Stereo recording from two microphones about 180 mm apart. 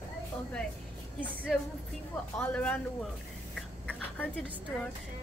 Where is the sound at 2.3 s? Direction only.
10° left (ahead or behind).